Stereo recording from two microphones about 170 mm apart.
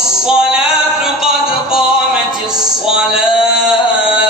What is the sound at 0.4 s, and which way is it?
Music, 5° right (ahead or behind).